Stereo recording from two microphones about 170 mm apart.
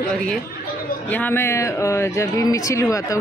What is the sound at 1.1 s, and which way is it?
Speech, 10° left (ahead or behind).